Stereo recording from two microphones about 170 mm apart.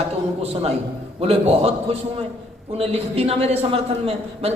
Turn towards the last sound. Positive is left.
turn(degrees=-35)  # may be behind; listen again after turning